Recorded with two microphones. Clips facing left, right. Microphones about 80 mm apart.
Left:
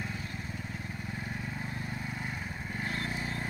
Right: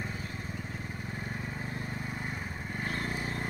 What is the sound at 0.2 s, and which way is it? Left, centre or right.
Vehicle, centre.